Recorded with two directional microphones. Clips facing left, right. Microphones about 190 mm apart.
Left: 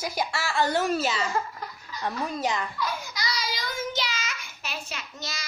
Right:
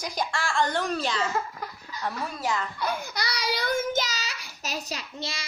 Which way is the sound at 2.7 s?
60° right (ahead or behind).